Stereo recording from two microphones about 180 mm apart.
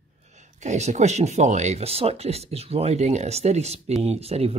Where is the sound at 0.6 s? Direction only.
40° right (ahead or behind).